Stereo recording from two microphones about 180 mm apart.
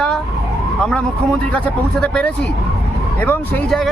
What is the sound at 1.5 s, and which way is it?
Speech, 5° left (ahead or behind).